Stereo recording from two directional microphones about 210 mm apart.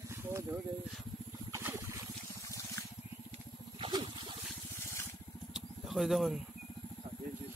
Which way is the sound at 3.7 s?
20° right (ahead or behind).